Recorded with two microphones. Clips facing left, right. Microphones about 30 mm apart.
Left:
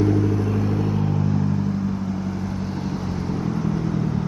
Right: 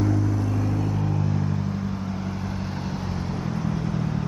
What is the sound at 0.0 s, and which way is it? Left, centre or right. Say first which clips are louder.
Vehicle: left 4 dB; centre.